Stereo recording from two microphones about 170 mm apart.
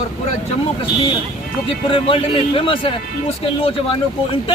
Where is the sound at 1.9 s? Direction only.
30° left (ahead or behind).